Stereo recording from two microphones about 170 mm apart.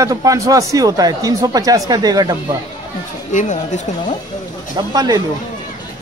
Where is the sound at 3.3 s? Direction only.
45° left (ahead or behind).